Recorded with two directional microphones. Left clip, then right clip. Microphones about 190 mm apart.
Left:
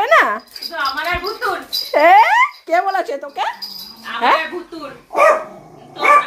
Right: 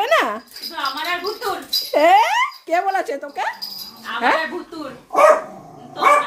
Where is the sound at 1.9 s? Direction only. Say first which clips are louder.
Left 4 dB; 15° right (ahead or behind).